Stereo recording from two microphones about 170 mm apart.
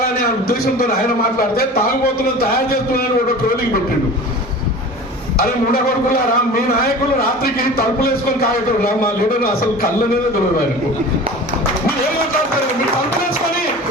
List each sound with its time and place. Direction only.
0.4 s a man's voice: 60° left (ahead or behind)
5.4 s a man's voice: 60° left (ahead or behind)